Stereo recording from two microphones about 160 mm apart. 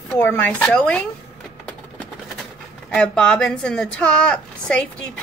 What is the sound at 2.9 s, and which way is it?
A woman's voice, 5° left (ahead or behind).